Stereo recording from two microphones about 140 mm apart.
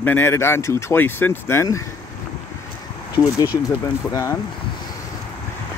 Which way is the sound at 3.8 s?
25° left (ahead or behind).